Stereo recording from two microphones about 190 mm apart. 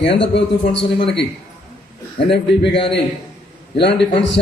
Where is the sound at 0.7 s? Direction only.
70° left (ahead or behind).